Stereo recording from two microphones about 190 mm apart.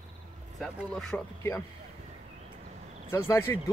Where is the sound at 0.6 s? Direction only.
5° left (ahead or behind).